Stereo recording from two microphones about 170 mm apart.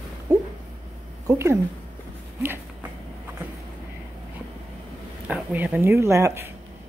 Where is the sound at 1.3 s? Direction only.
15° right (ahead or behind).